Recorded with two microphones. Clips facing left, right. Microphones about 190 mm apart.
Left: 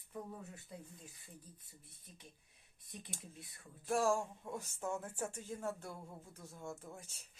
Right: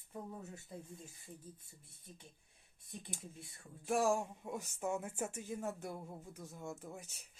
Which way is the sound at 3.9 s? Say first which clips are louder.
Right 1 dB; 15° right (ahead or behind).